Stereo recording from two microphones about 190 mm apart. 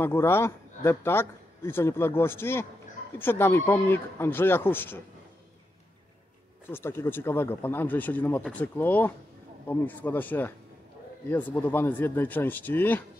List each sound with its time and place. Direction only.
0.0 s speech: 10° left (ahead or behind)
6.7 s speech: 10° left (ahead or behind)